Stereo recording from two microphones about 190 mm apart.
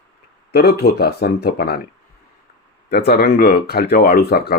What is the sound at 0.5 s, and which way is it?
Speech, 55° left (ahead or behind).